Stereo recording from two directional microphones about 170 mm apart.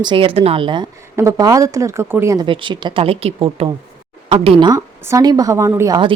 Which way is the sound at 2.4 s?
30° right (ahead or behind).